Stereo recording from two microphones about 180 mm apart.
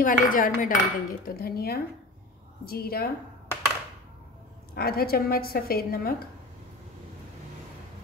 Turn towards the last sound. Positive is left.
turn(degrees=55)  # may be behind; listen again after turning